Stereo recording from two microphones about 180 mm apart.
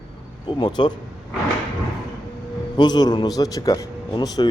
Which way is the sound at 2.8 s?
25° left (ahead or behind).